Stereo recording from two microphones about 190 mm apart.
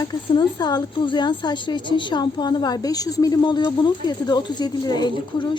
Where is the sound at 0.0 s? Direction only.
20° left (ahead or behind).